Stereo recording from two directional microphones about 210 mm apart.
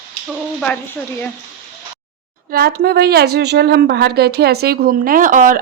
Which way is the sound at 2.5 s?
50° right (ahead or behind).